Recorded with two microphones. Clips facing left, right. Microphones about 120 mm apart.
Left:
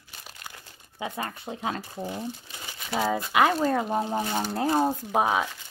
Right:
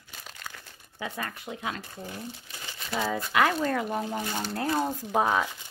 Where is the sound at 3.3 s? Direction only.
25° left (ahead or behind).